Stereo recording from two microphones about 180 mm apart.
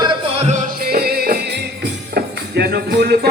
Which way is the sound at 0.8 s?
60° right (ahead or behind).